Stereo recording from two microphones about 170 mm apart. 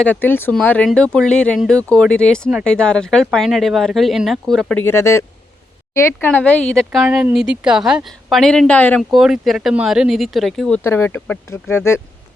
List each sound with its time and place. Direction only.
0.0 s speech: 10° left (ahead or behind)
4.8 s a woman's voice: 15° left (ahead or behind)
9.0 s speech: centre (ahead or behind)
10.8 s speech: 15° left (ahead or behind)